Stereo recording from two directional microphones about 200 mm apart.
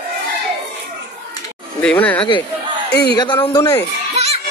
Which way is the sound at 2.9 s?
55° left (ahead or behind).